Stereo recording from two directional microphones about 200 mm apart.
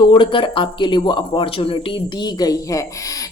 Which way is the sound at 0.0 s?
25° left (ahead or behind).